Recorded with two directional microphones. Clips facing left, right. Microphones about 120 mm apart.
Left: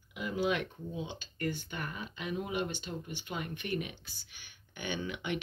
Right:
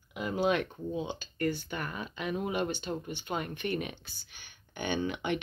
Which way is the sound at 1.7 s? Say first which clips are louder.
Right 3 dB; 55° right (ahead or behind).